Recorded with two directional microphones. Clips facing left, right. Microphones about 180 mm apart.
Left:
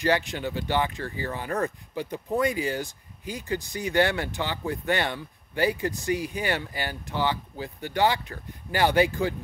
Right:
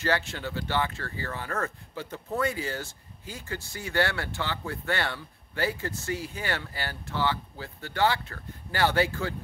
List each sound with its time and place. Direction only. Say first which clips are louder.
0.0 s speech: left 4 dB; 15° left (ahead or behind)